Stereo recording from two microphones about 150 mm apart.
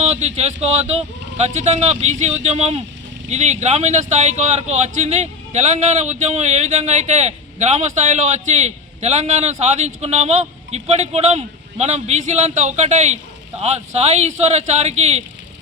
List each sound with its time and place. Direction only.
0.0 s speech: 50° right (ahead or behind)